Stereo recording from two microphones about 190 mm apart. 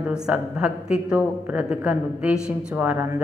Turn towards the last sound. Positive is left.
turn(degrees=-10)  # may be behind; listen again after turning